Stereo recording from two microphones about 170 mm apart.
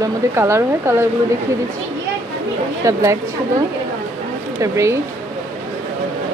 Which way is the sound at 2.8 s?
20° right (ahead or behind).